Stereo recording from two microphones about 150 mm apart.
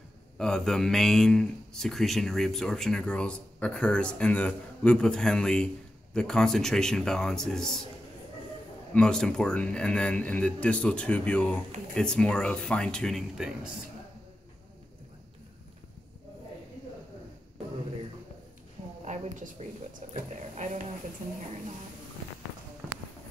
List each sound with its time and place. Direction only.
0.4 s speech: 5° left (ahead or behind)
8.9 s speech: 5° left (ahead or behind)
19.0 s a sound: 55° right (ahead or behind)
20.2 s speech: 60° right (ahead or behind)